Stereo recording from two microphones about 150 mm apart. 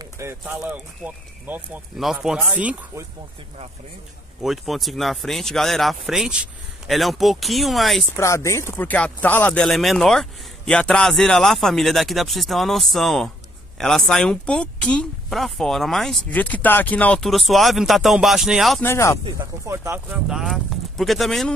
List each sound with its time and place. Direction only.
0.0 s clip-clop: 20° right (ahead or behind)
1.0 s speech: 10° right (ahead or behind)
4.4 s speech: centre (ahead or behind)
8.2 s speech: 20° left (ahead or behind); by 18.8 s centre (ahead or behind)
18.8 s speech: 15° left (ahead or behind)
19.6 s speech: 20° right (ahead or behind)
20.2 s speech: centre (ahead or behind)